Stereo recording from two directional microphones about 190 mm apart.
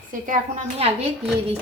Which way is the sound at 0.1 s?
40° right (ahead or behind).